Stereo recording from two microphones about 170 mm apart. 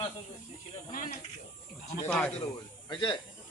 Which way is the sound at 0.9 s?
55° left (ahead or behind).